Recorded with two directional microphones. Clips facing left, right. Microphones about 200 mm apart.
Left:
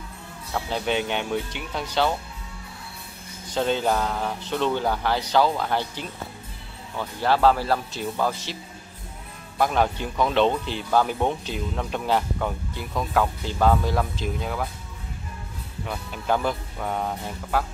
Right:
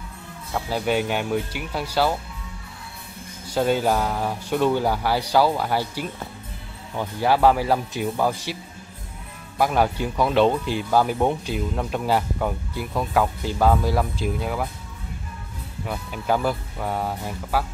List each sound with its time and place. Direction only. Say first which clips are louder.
0.5 s speech: right 2 dB; 5° right (ahead or behind)
3.4 s speech: right 2 dB; 10° right (ahead or behind)
9.6 s speech: right 2 dB; 10° right (ahead or behind)
15.8 s speech: right 2 dB; 5° right (ahead or behind)